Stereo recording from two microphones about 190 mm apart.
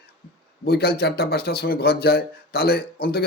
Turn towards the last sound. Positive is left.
turn(degrees=55)  # may be behind; listen again after turning